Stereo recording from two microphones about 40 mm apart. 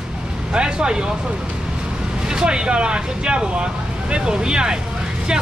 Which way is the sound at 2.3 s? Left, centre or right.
Centre.